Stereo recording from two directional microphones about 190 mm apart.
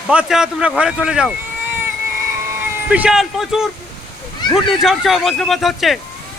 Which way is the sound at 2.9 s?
5° right (ahead or behind).